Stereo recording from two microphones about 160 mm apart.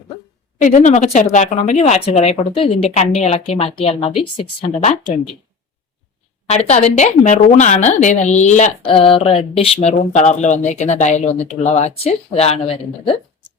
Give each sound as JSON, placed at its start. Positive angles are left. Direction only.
{"t": 0.6, "sound": "speech", "side_deg": 50}
{"t": 6.5, "sound": "speech", "side_deg": 40}
{"t": 8.8, "sound": "speech", "side_deg": 35}